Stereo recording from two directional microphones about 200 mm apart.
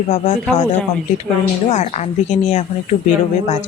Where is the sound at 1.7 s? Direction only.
35° left (ahead or behind).